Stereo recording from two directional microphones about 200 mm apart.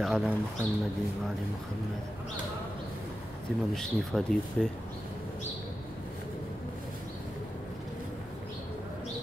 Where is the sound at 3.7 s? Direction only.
Centre (ahead or behind).